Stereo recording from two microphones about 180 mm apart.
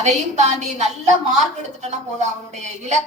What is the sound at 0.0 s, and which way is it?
A woman's voice, 40° right (ahead or behind).